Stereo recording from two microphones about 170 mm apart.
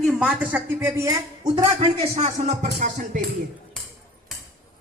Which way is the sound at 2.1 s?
40° right (ahead or behind).